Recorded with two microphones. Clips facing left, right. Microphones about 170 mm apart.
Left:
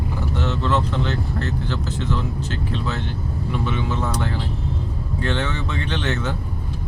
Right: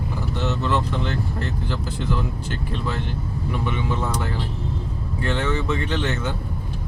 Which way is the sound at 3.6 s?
10° right (ahead or behind).